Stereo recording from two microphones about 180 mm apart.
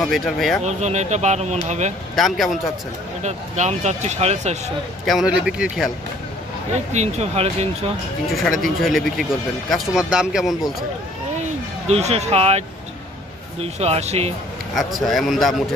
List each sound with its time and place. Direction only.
0.0 s speech: centre (ahead or behind)
0.7 s speech: 40° right (ahead or behind)
2.1 s speech: centre (ahead or behind)
3.2 s speech: 40° right (ahead or behind)
5.0 s speech: 5° right (ahead or behind)
6.7 s speech: 40° right (ahead or behind)
8.3 s speech: centre (ahead or behind)
11.9 s speech: 35° right (ahead or behind)
14.8 s speech: centre (ahead or behind)